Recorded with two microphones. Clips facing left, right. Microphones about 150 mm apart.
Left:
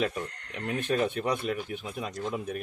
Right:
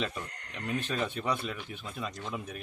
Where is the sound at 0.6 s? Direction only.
55° left (ahead or behind).